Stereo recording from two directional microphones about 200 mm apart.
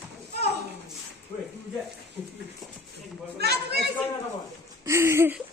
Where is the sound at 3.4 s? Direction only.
55° right (ahead or behind).